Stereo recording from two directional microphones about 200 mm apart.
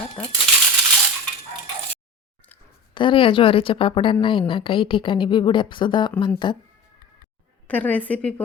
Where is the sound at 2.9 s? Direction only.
25° left (ahead or behind).